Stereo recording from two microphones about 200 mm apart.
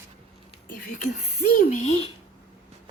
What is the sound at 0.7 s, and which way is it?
Speech, 45° left (ahead or behind).